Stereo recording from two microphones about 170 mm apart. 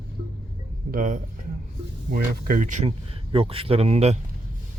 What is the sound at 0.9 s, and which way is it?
Speech, 45° right (ahead or behind).